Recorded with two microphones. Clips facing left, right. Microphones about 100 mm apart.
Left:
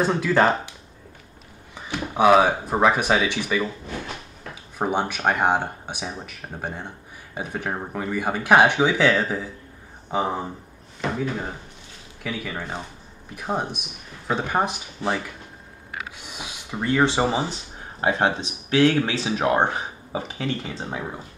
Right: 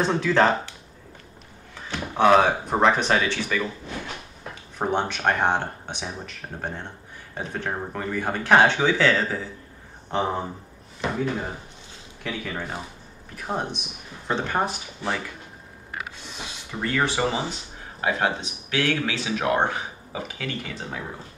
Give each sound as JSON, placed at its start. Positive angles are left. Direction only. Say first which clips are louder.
{"t": 0.0, "sound": "speech", "louder": "left 1 dB", "side_deg": 5}
{"t": 1.9, "sound": "speech", "louder": "left 1 dB", "side_deg": 10}
{"t": 4.7, "sound": "speech", "louder": "left 1 dB", "side_deg": 10}